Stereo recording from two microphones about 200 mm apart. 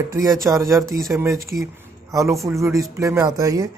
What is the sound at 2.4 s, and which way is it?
Speech, 15° right (ahead or behind).